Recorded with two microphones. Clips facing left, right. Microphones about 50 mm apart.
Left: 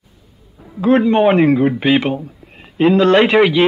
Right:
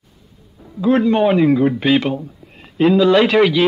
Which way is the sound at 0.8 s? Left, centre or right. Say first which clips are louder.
Left 2 dB; centre.